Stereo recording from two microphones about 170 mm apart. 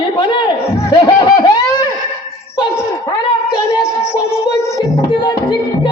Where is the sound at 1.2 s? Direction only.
25° left (ahead or behind).